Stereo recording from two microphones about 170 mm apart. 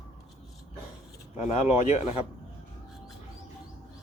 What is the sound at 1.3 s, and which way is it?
Speech, 40° left (ahead or behind).